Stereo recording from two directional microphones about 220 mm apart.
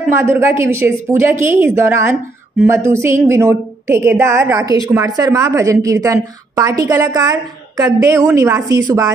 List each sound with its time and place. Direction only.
0.1 s a woman's voice: 10° right (ahead or behind)